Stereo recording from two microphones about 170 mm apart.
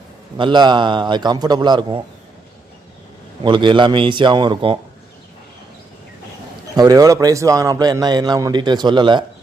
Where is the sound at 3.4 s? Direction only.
30° right (ahead or behind).